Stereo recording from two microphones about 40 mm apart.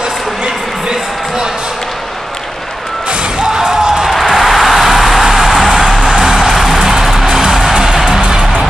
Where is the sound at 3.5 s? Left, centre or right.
Right.